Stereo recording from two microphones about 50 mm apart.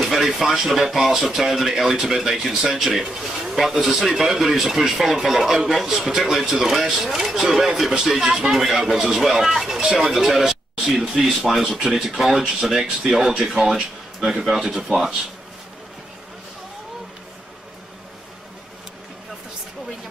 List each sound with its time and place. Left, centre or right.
0.1 s a sound: centre
0.7 s speech: centre
13.6 s speech: centre
14.2 s speech: centre